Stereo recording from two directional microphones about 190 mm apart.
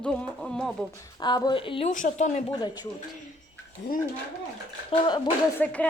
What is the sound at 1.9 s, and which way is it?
Speech, 40° left (ahead or behind).